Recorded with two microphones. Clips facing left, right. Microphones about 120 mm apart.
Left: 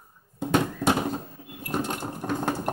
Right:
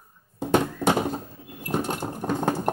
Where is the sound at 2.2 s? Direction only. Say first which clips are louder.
Right 2 dB; 15° right (ahead or behind).